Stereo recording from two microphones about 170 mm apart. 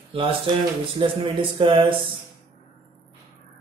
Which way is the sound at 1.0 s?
30° right (ahead or behind).